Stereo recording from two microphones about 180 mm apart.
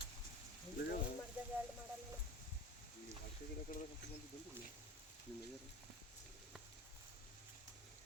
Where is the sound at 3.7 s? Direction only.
50° left (ahead or behind).